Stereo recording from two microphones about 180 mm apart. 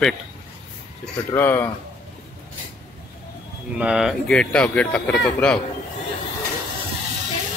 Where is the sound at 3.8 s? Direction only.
5° right (ahead or behind).